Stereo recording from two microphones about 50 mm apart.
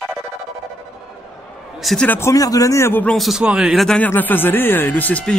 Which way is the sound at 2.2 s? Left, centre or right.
Left.